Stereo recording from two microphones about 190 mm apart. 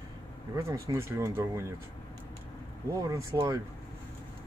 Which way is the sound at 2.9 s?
20° right (ahead or behind).